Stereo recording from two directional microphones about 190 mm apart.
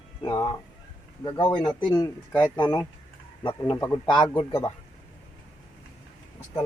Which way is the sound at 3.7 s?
15° left (ahead or behind).